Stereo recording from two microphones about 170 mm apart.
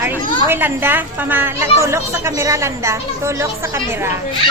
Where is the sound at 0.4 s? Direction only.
10° right (ahead or behind).